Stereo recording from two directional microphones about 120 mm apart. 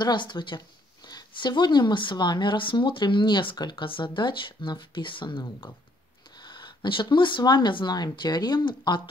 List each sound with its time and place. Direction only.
0.0 s speech: 40° left (ahead or behind)